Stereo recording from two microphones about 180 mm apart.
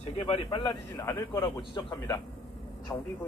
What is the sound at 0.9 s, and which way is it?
A man's voice, 15° left (ahead or behind).